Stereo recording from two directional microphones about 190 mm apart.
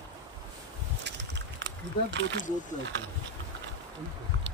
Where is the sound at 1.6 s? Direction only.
65° right (ahead or behind).